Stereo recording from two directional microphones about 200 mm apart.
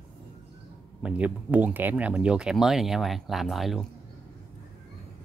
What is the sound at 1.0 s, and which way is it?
Speech, 5° right (ahead or behind).